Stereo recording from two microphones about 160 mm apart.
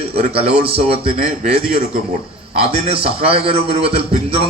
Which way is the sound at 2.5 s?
40° right (ahead or behind).